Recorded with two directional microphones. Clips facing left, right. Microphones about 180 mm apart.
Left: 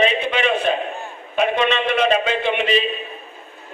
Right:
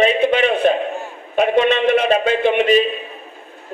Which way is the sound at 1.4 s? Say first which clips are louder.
Right 4 dB; 45° right (ahead or behind).